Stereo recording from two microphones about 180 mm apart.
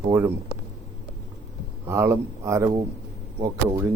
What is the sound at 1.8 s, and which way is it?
Speech, 15° right (ahead or behind).